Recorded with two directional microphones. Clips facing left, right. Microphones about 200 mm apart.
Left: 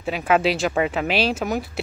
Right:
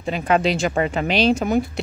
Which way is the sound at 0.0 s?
5° left (ahead or behind).